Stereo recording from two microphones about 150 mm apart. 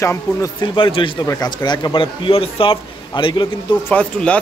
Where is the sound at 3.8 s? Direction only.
10° left (ahead or behind).